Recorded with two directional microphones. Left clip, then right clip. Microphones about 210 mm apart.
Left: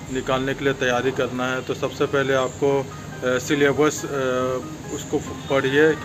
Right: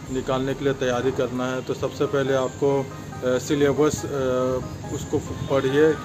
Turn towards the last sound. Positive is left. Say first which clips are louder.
# left 1 dB
turn(degrees=-5)  # may be behind; listen again after turning